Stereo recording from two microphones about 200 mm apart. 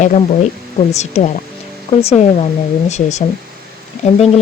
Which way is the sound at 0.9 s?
35° left (ahead or behind).